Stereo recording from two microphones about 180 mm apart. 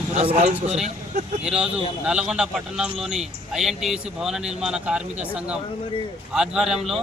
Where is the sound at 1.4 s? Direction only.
5° right (ahead or behind).